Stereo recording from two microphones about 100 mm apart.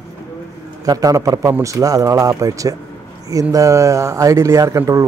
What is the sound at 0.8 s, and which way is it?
Speech, 35° right (ahead or behind).